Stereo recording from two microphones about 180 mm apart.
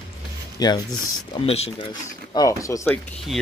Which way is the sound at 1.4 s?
35° left (ahead or behind).